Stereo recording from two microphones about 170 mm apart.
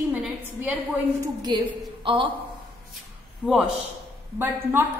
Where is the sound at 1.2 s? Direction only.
25° right (ahead or behind).